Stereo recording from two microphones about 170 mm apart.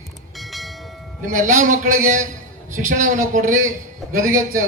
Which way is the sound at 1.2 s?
50° right (ahead or behind).